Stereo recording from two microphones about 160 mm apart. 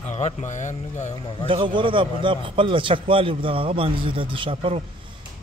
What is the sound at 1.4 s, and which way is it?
A man's voice, 30° right (ahead or behind).